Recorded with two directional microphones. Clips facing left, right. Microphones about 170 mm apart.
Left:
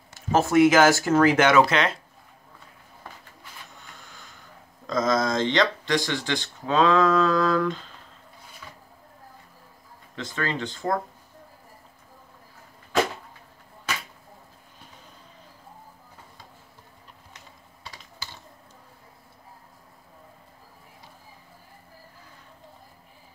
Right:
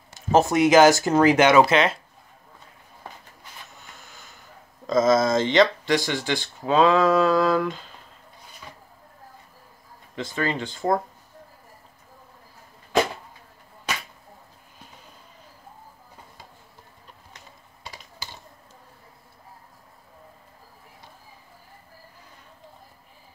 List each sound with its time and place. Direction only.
0.3 s speech: 20° right (ahead or behind)
5.0 s speech: 5° right (ahead or behind)
10.1 s speech: 15° right (ahead or behind)
17.8 s typing: 15° right (ahead or behind)